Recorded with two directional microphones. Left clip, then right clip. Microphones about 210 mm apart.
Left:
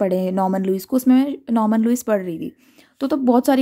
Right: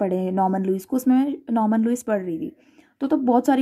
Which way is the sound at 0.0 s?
30° left (ahead or behind).